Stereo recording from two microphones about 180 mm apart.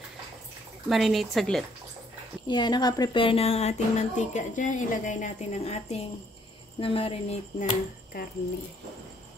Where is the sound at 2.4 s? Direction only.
25° left (ahead or behind).